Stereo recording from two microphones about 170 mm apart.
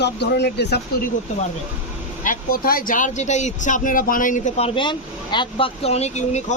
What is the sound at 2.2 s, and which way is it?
Speech, 55° left (ahead or behind).